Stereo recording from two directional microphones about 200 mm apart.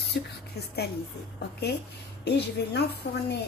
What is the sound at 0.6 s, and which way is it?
Speech, 55° left (ahead or behind).